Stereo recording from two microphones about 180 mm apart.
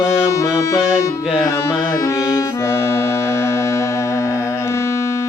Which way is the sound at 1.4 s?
15° left (ahead or behind).